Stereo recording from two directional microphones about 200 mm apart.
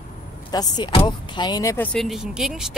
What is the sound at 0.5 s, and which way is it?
Speech, 20° left (ahead or behind).